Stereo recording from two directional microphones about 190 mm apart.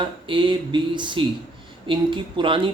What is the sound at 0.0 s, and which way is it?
Speech, 25° right (ahead or behind).